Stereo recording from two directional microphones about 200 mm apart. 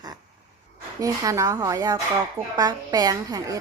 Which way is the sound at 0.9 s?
15° right (ahead or behind).